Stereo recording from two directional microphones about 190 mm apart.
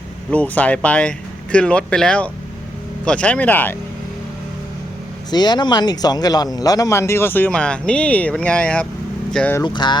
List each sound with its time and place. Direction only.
0.3 s a man's voice: 5° left (ahead or behind)
5.3 s a man's voice: 20° left (ahead or behind)
9.6 s a sound: 25° left (ahead or behind)